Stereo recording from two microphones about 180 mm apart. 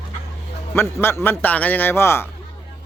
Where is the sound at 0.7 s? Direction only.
15° left (ahead or behind).